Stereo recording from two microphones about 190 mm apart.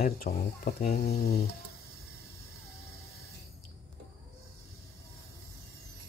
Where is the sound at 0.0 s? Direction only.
50° left (ahead or behind).